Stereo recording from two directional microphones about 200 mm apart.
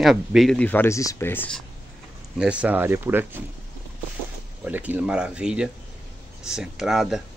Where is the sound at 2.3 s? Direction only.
5° right (ahead or behind).